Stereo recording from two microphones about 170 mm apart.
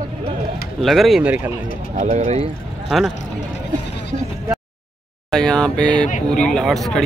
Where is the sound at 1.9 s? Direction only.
45° right (ahead or behind).